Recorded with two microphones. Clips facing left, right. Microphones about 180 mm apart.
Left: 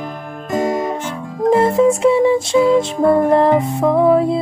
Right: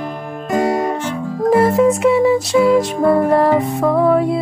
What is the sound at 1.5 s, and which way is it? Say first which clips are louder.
Music: even; 30° left (ahead or behind).